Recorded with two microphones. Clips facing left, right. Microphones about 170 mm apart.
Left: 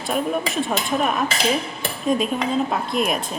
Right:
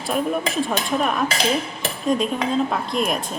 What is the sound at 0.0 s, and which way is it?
A woman's voice, centre (ahead or behind).